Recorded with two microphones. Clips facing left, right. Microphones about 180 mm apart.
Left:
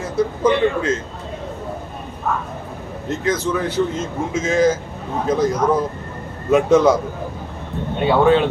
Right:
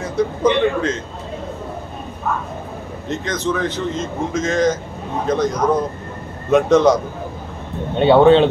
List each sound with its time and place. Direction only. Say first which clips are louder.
0.0 s speech: right 1 dB; 5° left (ahead or behind)
3.1 s speech: left 1 dB; 5° left (ahead or behind)
8.0 s speech: right 4 dB; 30° right (ahead or behind)